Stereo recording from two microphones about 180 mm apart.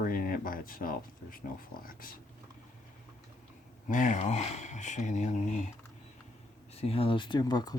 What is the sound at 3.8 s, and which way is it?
Speech, 45° left (ahead or behind).